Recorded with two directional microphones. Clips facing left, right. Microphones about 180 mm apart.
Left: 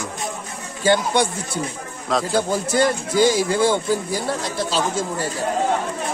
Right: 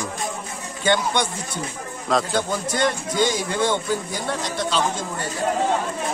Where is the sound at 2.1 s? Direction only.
5° left (ahead or behind).